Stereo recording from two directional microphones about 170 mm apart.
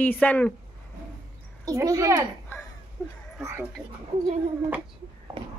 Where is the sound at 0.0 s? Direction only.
10° left (ahead or behind).